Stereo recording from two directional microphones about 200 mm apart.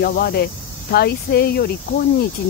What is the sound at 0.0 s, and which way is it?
Speech, 50° left (ahead or behind).